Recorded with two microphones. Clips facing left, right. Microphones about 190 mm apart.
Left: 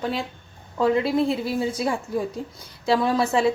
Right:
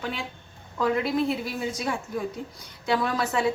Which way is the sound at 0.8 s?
30° left (ahead or behind).